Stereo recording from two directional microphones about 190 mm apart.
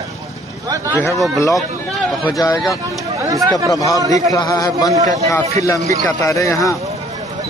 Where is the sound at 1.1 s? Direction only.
Centre (ahead or behind).